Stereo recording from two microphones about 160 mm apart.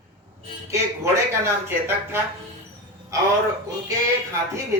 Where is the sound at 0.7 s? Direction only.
20° right (ahead or behind).